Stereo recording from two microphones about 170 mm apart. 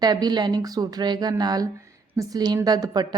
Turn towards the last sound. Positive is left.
turn(degrees=-25)  # may be behind; listen again after turning